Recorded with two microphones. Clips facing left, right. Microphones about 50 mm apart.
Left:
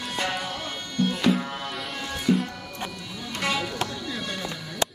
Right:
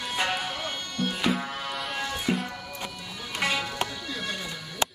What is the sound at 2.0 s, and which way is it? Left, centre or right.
Music, centre.